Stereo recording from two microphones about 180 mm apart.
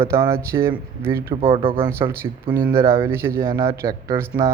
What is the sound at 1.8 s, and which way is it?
Speech, 15° right (ahead or behind).